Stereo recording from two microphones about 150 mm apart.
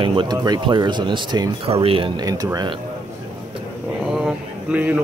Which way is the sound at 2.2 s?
25° right (ahead or behind).